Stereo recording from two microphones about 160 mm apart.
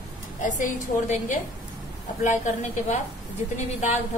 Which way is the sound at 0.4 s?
55° left (ahead or behind).